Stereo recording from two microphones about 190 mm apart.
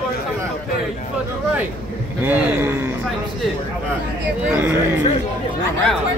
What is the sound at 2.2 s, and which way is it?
Speech, 10° right (ahead or behind).